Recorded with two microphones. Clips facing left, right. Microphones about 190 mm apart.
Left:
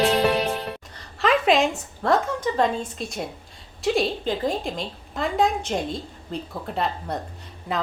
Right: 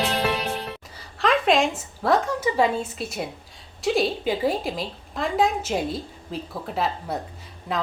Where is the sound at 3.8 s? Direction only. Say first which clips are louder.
Even; centre (ahead or behind).